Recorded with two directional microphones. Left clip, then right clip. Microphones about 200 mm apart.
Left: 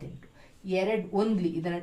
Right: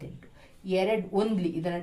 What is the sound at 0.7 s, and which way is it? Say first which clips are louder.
Speech: right 1 dB; 35° right (ahead or behind).